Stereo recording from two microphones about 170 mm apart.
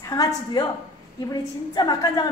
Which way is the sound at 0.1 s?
20° left (ahead or behind).